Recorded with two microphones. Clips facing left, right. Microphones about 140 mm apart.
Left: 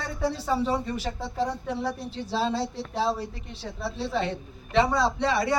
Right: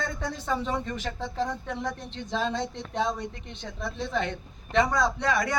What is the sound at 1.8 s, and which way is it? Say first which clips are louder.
Speech: left 3 dB; 10° left (ahead or behind).